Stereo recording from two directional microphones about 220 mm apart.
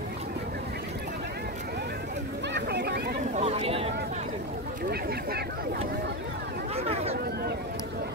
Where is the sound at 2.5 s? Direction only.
50° right (ahead or behind).